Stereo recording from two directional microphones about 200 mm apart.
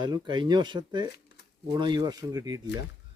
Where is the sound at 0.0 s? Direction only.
20° right (ahead or behind).